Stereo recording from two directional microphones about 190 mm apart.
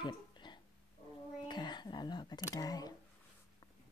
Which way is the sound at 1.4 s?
25° left (ahead or behind).